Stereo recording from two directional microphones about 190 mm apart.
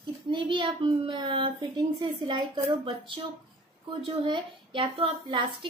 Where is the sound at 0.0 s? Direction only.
25° right (ahead or behind).